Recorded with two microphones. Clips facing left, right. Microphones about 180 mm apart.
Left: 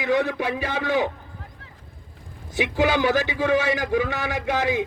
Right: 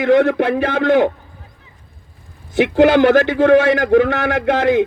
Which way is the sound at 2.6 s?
60° right (ahead or behind).